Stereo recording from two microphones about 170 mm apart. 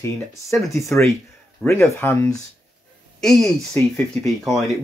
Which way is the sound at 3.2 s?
5° left (ahead or behind).